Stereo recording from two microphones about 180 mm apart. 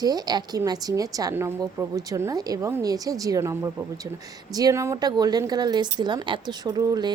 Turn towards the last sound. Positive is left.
turn(degrees=-20)  # may be behind; listen again after turning